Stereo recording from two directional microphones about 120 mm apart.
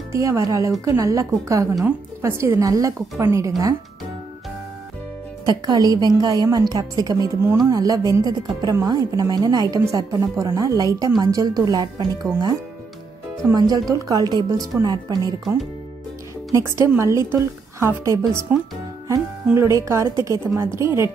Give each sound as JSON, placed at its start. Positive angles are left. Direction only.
{"t": 0.1, "sound": "speech", "side_deg": -25}
{"t": 5.4, "sound": "a woman's voice", "side_deg": -35}
{"t": 13.5, "sound": "a woman's voice", "side_deg": -30}
{"t": 16.5, "sound": "speech", "side_deg": -25}
{"t": 19.5, "sound": "speech", "side_deg": -25}